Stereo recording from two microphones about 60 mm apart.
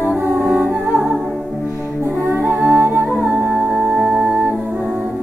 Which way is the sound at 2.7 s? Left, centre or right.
Right.